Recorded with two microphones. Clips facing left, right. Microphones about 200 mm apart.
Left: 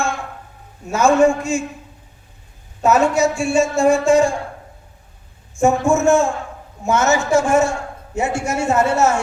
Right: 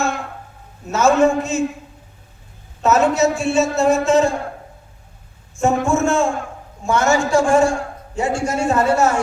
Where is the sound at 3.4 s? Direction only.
10° left (ahead or behind).